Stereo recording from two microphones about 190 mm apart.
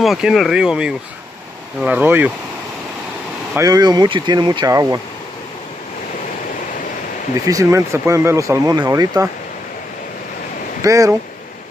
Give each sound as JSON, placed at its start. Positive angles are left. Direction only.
{"t": 0.0, "sound": "speech", "side_deg": 0}
{"t": 3.5, "sound": "speech", "side_deg": -20}
{"t": 7.4, "sound": "speech", "side_deg": -15}
{"t": 10.8, "sound": "speech", "side_deg": -15}